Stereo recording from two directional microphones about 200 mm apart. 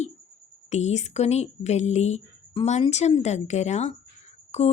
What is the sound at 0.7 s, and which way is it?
Speech, 35° left (ahead or behind).